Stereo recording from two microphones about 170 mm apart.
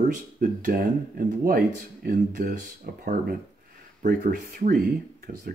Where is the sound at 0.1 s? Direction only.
50° right (ahead or behind).